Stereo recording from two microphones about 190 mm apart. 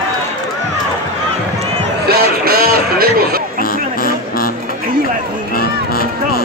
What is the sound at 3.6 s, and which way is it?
Music, 50° left (ahead or behind).